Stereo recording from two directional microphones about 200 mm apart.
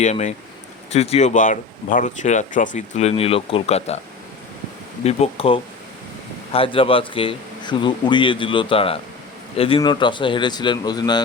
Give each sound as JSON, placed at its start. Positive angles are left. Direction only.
{"t": 0.0, "sound": "speech", "side_deg": 35}
{"t": 5.0, "sound": "speech", "side_deg": 30}